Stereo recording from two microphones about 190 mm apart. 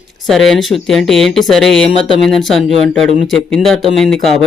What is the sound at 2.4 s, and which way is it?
Speech, centre (ahead or behind).